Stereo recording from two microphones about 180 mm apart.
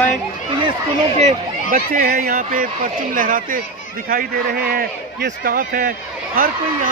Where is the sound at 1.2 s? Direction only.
50° right (ahead or behind).